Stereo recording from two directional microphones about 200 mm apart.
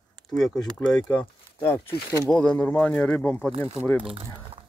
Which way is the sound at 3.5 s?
30° right (ahead or behind).